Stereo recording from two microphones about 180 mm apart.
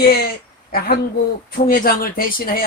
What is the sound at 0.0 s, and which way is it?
Speech, 55° left (ahead or behind).